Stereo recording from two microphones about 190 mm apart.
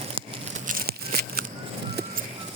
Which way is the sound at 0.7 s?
50° right (ahead or behind).